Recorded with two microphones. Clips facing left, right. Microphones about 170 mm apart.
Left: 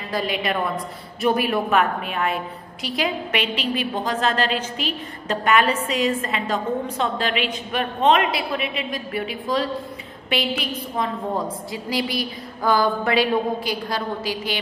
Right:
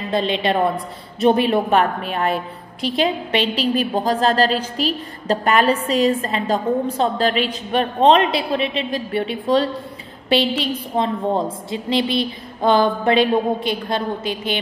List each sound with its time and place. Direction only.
0.1 s a woman's voice: 25° right (ahead or behind)